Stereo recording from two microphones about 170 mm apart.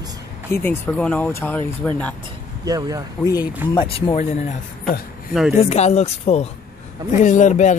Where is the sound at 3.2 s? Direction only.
20° left (ahead or behind).